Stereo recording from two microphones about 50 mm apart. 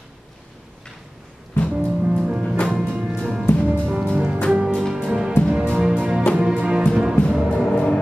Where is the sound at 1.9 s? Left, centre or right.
Right.